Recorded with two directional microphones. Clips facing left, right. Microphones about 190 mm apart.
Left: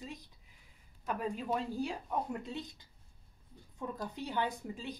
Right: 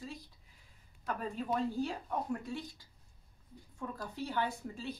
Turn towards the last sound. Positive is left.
turn(degrees=15)  # may be behind; listen again after turning